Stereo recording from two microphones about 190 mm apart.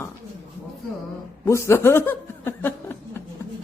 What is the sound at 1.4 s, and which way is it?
A woman's voice, 15° left (ahead or behind).